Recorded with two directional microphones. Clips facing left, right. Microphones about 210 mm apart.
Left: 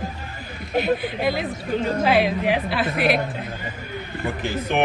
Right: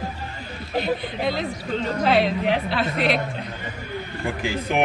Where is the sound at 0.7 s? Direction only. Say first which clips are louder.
Left 3 dB; 5° left (ahead or behind).